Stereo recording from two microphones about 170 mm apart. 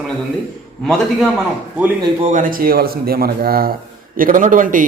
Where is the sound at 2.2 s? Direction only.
50° right (ahead or behind).